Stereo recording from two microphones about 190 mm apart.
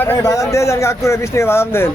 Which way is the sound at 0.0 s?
15° left (ahead or behind).